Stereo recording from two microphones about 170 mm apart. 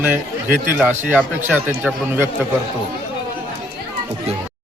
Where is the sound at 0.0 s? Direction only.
10° right (ahead or behind).